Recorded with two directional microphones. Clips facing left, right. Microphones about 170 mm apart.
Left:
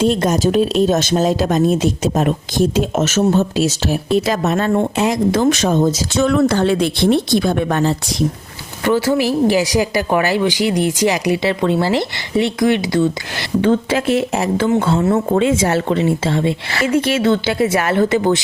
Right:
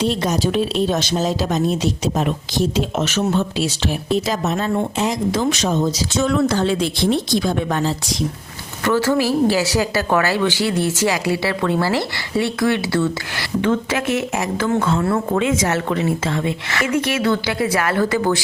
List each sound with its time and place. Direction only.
0.0 s speech: 50° left (ahead or behind)
4.3 s speech: 60° left (ahead or behind)
8.8 s a woman's voice: 10° left (ahead or behind)
13.6 s speech: 30° left (ahead or behind)